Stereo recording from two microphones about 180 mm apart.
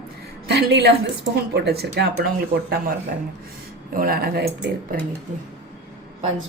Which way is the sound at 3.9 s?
55° right (ahead or behind).